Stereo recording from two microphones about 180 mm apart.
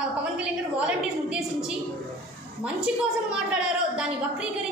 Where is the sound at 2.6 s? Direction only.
5° right (ahead or behind).